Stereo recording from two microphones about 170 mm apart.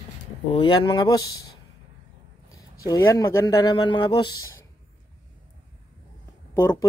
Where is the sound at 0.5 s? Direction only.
30° left (ahead or behind).